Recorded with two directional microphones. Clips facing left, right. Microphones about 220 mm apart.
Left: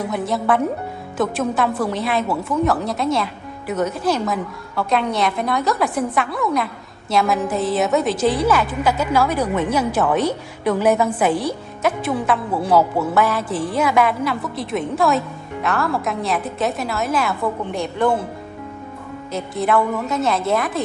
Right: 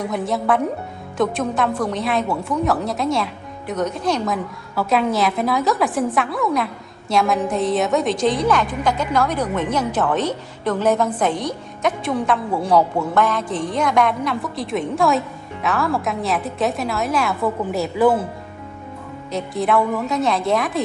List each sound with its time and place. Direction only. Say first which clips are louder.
0.0 s speech: even; centre (ahead or behind)
19.3 s speech: even; centre (ahead or behind)